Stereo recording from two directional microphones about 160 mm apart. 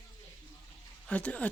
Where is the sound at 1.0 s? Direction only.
10° left (ahead or behind).